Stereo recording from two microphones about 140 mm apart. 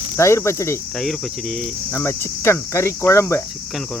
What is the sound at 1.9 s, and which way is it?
Cricket, 20° left (ahead or behind).